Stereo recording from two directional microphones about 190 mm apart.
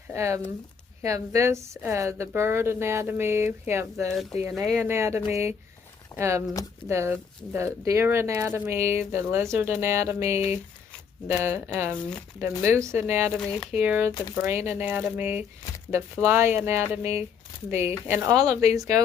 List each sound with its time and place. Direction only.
0.1 s speech: 15° right (ahead or behind)
4.5 s speech: centre (ahead or behind)
4.8 s speech: 15° right (ahead or behind)
13.4 s speech: 5° left (ahead or behind)
13.7 s speech: 10° right (ahead or behind)
14.1 s speech: 20° left (ahead or behind)
14.4 s speech: 15° right (ahead or behind)